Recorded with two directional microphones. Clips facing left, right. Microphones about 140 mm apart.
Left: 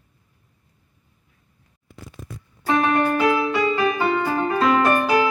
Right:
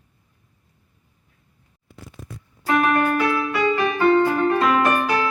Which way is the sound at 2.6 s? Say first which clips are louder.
Even; 25° left (ahead or behind).